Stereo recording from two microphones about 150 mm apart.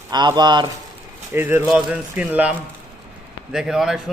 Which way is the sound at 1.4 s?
15° right (ahead or behind).